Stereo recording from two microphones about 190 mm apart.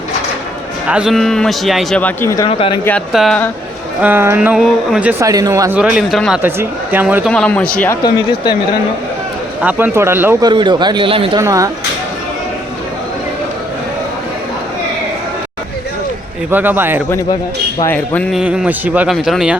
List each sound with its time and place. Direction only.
0.9 s a man's voice: 5° right (ahead or behind)
4.0 s speech: 10° right (ahead or behind)
5.3 s speech: 20° right (ahead or behind)
5.8 s a man's voice: 5° right (ahead or behind)
7.3 s a man's voice: 5° left (ahead or behind)
9.6 s speech: 10° right (ahead or behind)
10.5 s speech: 25° right (ahead or behind)
11.3 s speech: 15° right (ahead or behind)
16.5 s speech: 10° right (ahead or behind)
17.7 s a man's voice: 10° left (ahead or behind)